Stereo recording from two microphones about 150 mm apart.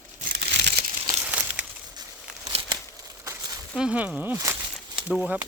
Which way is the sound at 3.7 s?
5° right (ahead or behind).